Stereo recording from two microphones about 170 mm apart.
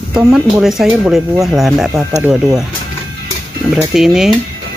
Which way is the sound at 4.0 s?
Centre (ahead or behind).